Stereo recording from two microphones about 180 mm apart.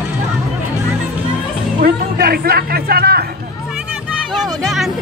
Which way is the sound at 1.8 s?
55° right (ahead or behind).